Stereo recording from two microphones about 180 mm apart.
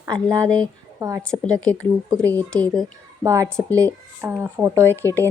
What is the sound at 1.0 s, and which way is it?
Speech, 15° right (ahead or behind).